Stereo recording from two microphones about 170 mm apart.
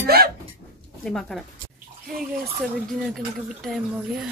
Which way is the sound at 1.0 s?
Centre (ahead or behind).